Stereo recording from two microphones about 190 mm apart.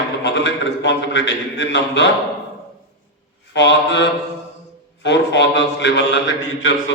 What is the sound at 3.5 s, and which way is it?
A man's voice, 70° left (ahead or behind).